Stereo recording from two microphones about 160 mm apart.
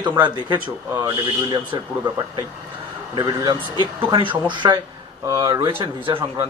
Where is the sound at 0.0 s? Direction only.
30° right (ahead or behind).